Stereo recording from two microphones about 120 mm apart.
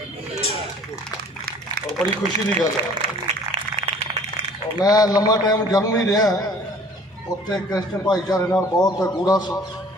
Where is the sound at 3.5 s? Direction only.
65° right (ahead or behind).